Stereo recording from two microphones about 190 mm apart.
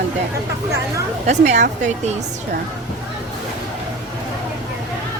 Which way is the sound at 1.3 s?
35° right (ahead or behind).